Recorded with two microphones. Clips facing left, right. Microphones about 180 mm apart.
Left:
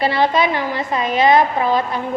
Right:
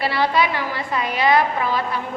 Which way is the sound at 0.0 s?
20° left (ahead or behind).